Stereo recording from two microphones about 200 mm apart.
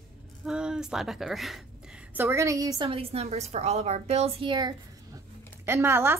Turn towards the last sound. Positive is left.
turn(degrees=-10)  # may be behind; listen again after turning